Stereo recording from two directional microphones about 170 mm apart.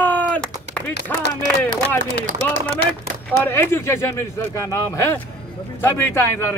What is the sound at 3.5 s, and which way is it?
A man's voice, 15° left (ahead or behind).